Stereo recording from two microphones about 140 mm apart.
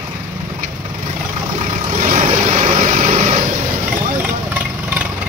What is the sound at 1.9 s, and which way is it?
Vehicle, 60° right (ahead or behind).